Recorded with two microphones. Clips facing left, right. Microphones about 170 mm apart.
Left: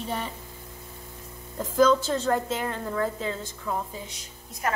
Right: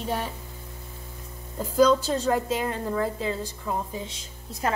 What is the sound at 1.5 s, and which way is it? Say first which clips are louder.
A woman's voice: right 1 dB; 10° right (ahead or behind).